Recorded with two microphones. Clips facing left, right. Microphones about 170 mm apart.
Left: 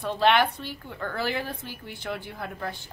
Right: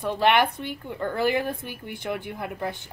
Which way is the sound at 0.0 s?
15° right (ahead or behind).